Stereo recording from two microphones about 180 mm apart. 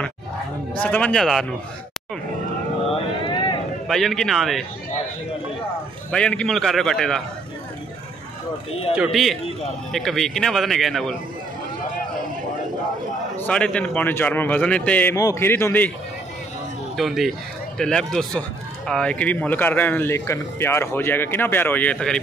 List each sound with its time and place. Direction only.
0.7 s speech: 5° left (ahead or behind)
2.9 s vehicle: 25° left (ahead or behind)
3.8 s speech: centre (ahead or behind)
6.1 s speech: 5° left (ahead or behind)
8.9 s speech: centre (ahead or behind)
13.5 s speech: 5° left (ahead or behind)
16.9 s speech: centre (ahead or behind)